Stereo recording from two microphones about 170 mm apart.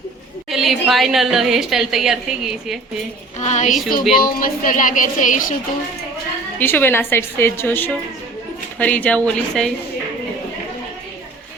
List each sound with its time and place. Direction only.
0.5 s a woman's voice: centre (ahead or behind)
3.4 s speech: 45° left (ahead or behind)
3.7 s a woman's voice: centre (ahead or behind)
4.1 s speech: 60° left (ahead or behind)
6.6 s a woman's voice: 10° left (ahead or behind)